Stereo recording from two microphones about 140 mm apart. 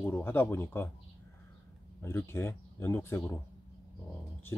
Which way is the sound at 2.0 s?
15° left (ahead or behind).